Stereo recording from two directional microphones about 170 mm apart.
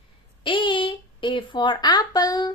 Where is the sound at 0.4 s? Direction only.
30° left (ahead or behind).